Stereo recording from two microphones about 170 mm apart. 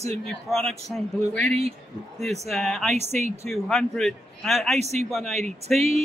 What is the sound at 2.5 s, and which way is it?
A man's voice, centre (ahead or behind).